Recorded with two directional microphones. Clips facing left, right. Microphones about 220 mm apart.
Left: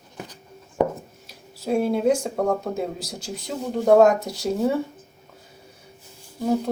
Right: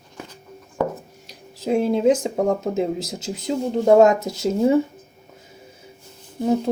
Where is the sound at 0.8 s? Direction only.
20° left (ahead or behind).